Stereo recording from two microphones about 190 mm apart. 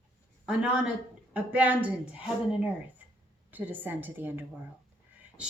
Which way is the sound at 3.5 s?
10° right (ahead or behind).